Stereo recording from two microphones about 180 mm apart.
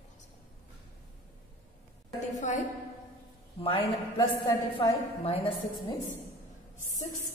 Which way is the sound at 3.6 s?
30° left (ahead or behind).